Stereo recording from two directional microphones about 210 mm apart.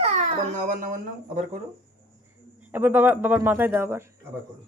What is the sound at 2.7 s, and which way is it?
A woman's voice, 10° right (ahead or behind).